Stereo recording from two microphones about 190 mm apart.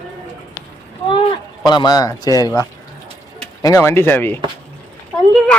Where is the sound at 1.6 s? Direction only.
20° left (ahead or behind).